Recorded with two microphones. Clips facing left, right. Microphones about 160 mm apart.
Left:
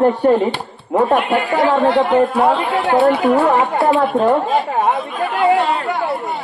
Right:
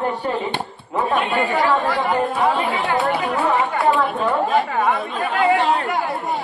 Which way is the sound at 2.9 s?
60° left (ahead or behind).